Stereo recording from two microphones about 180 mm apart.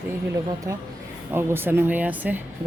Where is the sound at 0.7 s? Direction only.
15° right (ahead or behind).